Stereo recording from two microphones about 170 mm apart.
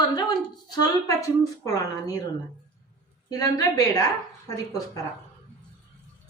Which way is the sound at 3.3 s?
20° left (ahead or behind).